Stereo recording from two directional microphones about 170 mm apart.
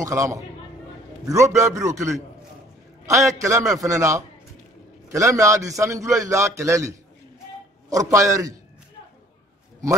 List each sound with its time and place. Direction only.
0.0 s a man's voice: 20° right (ahead or behind)